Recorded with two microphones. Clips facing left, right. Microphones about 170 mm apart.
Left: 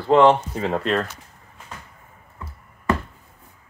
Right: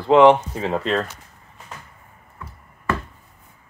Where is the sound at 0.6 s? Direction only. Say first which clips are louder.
Even; centre (ahead or behind).